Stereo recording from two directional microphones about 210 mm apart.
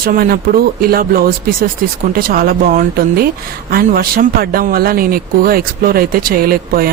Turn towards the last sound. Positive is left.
turn(degrees=-45)  # may be behind; listen again after turning